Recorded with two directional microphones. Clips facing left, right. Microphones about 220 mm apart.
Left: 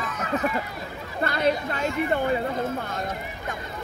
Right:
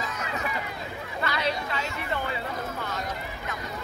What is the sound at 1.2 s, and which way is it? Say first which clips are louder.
A woman's voice: left 6 dB; 50° left (ahead or behind).